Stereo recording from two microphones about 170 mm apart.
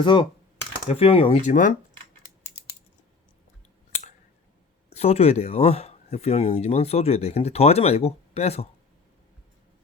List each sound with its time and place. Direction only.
0.0 s speech: 30° left (ahead or behind)
1.4 s speech: 50° left (ahead or behind)
4.9 s speech: 40° left (ahead or behind)